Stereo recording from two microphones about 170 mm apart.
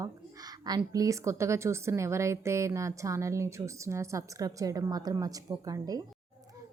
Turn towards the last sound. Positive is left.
turn(degrees=-20)  # may be behind; listen again after turning